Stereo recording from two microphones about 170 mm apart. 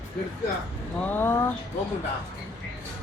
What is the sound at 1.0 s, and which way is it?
Speech, 10° left (ahead or behind).